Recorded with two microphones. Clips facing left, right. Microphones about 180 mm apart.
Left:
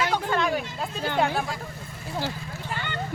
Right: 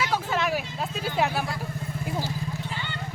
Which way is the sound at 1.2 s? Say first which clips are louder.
Left 1 dB; 5° right (ahead or behind).